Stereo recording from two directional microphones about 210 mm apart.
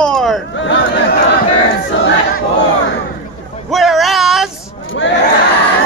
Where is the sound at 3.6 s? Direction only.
Centre (ahead or behind).